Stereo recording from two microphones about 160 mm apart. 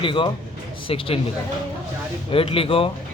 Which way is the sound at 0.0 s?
30° left (ahead or behind).